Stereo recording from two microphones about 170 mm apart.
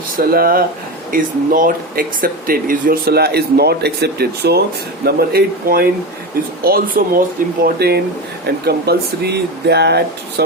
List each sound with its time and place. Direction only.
0.2 s speech: 60° right (ahead or behind)